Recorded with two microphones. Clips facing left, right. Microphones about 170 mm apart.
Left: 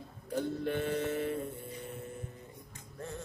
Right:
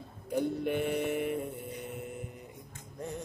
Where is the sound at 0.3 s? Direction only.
15° right (ahead or behind).